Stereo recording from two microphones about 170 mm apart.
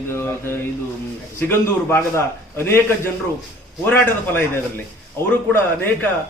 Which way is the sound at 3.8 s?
10° left (ahead or behind).